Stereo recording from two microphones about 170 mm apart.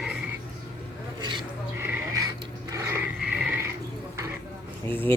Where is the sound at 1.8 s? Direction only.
10° right (ahead or behind).